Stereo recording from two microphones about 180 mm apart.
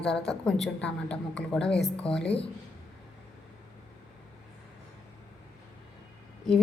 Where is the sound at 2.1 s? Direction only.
30° left (ahead or behind).